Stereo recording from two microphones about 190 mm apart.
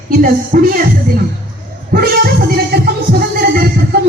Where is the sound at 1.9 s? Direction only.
55° right (ahead or behind).